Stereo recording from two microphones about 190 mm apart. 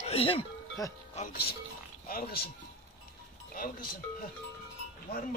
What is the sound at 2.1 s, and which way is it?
Speech, 50° left (ahead or behind).